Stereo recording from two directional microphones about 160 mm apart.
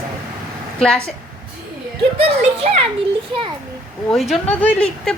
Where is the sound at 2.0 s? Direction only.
35° right (ahead or behind).